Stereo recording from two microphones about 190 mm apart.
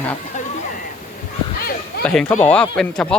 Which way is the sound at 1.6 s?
50° left (ahead or behind).